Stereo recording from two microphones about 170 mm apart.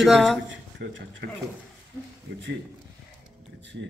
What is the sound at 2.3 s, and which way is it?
Speech, 70° right (ahead or behind).